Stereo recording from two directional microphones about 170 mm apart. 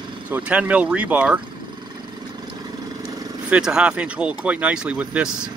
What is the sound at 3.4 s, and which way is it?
Speech, 5° right (ahead or behind).